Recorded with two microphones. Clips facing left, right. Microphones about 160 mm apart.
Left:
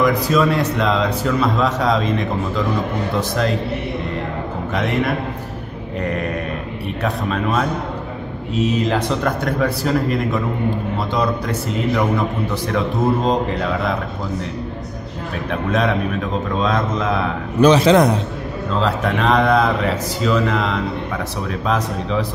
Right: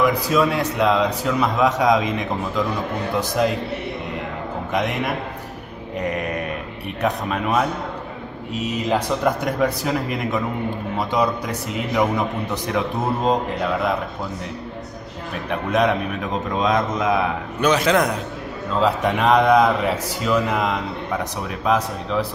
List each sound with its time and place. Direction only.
0.0 s a man's voice: 10° right (ahead or behind)
4.7 s a man's voice: 15° right (ahead or behind)
15.7 s a man's voice: 10° right (ahead or behind)
17.6 s a man's voice: 30° left (ahead or behind)
18.8 s a man's voice: 10° right (ahead or behind)